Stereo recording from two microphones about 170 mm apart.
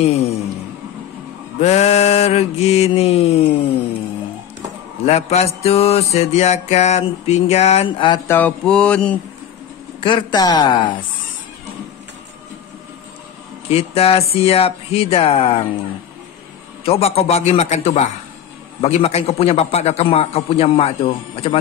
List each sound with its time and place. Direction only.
0.0 s a man's voice: 35° left (ahead or behind)
1.6 s a man's voice: 40° left (ahead or behind)
5.0 s a man's voice: 40° left (ahead or behind)
8.3 s mantra: 10° left (ahead or behind)
9.9 s speech: 30° left (ahead or behind)
13.7 s a man's voice: 35° left (ahead or behind)
16.8 s a man's voice: 35° left (ahead or behind)